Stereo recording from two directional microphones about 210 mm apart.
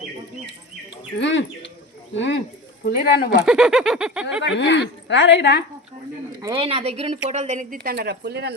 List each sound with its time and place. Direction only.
1.2 s a woman's voice: 60° left (ahead or behind)
3.4 s a sound: 5° right (ahead or behind)
4.5 s a woman's voice: 55° left (ahead or behind)
6.4 s speech: 25° right (ahead or behind); by 8.5 s 50° right (ahead or behind)